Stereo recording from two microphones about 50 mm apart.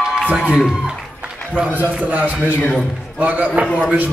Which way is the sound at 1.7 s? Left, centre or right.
Right.